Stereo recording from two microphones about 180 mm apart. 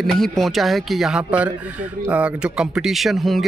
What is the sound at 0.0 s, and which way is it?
Speech, centre (ahead or behind).